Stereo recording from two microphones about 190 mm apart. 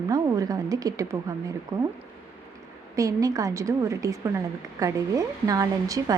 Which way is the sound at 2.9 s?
15° right (ahead or behind).